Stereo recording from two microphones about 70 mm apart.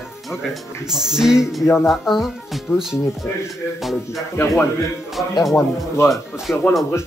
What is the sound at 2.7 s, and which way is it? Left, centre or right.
Speech, left.